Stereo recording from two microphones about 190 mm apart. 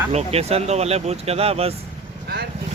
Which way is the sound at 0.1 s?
35° right (ahead or behind).